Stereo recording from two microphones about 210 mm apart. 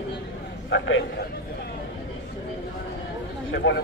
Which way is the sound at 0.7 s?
60° left (ahead or behind).